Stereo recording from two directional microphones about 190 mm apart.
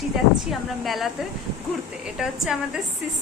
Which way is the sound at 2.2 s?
Centre (ahead or behind).